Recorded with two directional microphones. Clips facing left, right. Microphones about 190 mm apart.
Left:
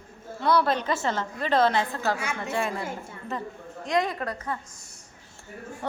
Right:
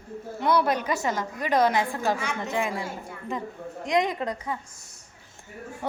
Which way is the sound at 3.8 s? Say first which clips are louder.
Right 1 dB; 20° right (ahead or behind).